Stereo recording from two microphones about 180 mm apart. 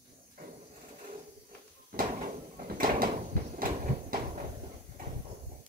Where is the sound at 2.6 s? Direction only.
55° right (ahead or behind).